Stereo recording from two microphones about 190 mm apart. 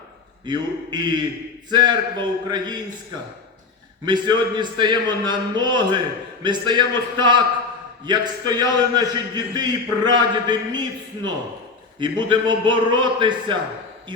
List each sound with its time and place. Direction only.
0.4 s a man's voice: 25° right (ahead or behind)
4.0 s a man's voice: 25° right (ahead or behind)
11.9 s a man's voice: 25° right (ahead or behind)